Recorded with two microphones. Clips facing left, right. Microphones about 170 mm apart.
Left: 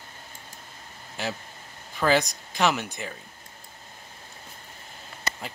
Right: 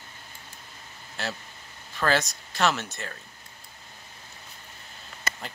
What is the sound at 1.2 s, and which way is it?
Speech, 15° left (ahead or behind).